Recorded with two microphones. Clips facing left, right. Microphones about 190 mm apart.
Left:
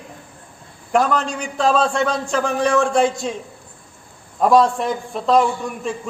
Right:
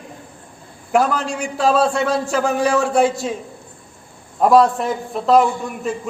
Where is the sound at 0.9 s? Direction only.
5° right (ahead or behind).